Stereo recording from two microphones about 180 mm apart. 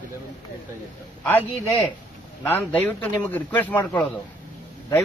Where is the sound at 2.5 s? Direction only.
10° left (ahead or behind).